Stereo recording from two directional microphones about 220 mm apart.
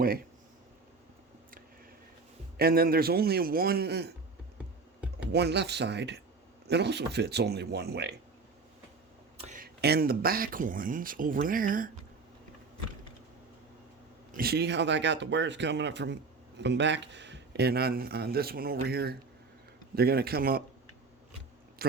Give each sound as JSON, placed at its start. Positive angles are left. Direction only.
{"t": 0.0, "sound": "speech", "side_deg": -40}
{"t": 2.6, "sound": "a man's voice", "side_deg": -45}
{"t": 5.3, "sound": "a man's voice", "side_deg": -50}
{"t": 9.4, "sound": "speech", "side_deg": -35}
{"t": 14.3, "sound": "a man's voice", "side_deg": -45}
{"t": 21.8, "sound": "speech", "side_deg": -45}